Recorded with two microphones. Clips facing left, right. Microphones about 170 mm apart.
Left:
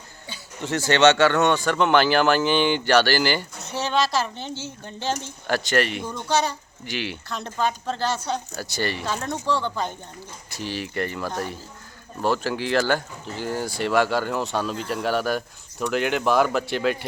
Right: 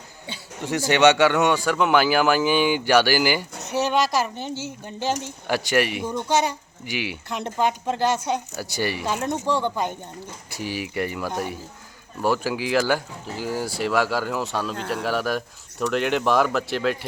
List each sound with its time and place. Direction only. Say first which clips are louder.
0.6 s speech: even; 15° right (ahead or behind)